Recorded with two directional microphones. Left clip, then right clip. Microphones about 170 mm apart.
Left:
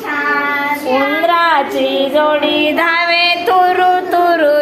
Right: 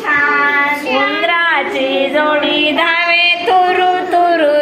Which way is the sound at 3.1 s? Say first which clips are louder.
Right 1 dB; 15° left (ahead or behind).